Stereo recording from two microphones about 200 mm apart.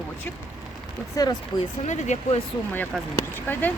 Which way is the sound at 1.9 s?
35° left (ahead or behind).